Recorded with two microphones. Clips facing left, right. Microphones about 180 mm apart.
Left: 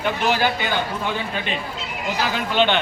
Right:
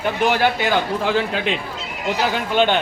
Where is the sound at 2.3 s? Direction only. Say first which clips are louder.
Even; 50° right (ahead or behind).